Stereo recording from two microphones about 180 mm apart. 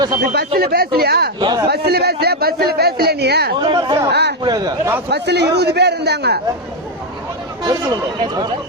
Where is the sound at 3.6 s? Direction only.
25° right (ahead or behind).